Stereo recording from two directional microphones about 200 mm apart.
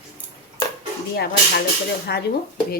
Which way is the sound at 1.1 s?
55° left (ahead or behind).